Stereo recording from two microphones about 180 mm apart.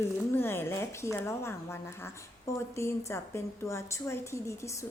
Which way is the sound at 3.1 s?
15° left (ahead or behind).